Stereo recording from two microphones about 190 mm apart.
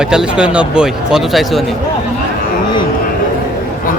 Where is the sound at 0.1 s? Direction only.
5° right (ahead or behind).